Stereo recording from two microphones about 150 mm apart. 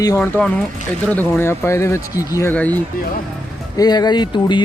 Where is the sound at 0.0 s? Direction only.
25° left (ahead or behind).